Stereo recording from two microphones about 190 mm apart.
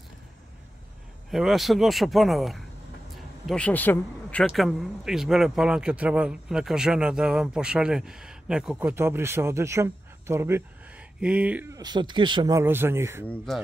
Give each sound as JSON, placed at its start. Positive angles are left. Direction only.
{"t": 1.3, "sound": "speech", "side_deg": 0}
{"t": 11.7, "sound": "speech", "side_deg": -20}